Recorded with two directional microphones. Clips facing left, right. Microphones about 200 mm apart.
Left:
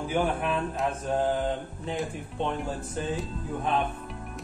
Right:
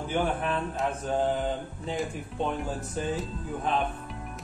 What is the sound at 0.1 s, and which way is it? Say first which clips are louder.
Mantra: left 1 dB; 5° left (ahead or behind).